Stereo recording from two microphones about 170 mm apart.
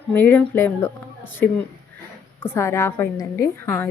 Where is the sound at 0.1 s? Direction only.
10° left (ahead or behind).